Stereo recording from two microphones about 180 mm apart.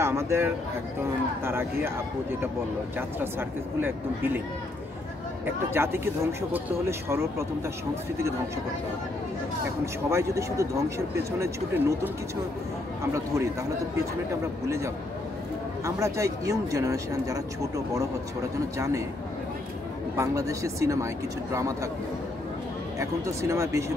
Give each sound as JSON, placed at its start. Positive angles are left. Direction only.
{"t": 0.0, "sound": "a man's voice", "side_deg": -15}
{"t": 3.0, "sound": "speech", "side_deg": -10}
{"t": 5.7, "sound": "speech", "side_deg": -15}
{"t": 10.0, "sound": "speech", "side_deg": -15}
{"t": 15.8, "sound": "speech", "side_deg": -15}
{"t": 20.2, "sound": "speech", "side_deg": -15}
{"t": 22.9, "sound": "speech", "side_deg": -15}